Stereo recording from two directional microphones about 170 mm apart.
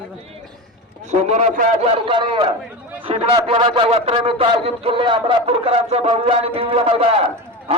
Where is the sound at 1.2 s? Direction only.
40° right (ahead or behind).